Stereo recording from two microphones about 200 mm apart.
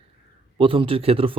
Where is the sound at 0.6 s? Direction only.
25° right (ahead or behind).